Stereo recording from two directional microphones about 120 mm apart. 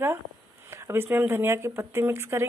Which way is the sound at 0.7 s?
20° right (ahead or behind).